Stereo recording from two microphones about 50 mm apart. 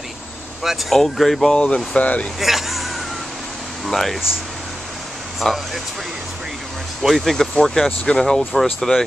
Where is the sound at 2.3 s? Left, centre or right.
Centre.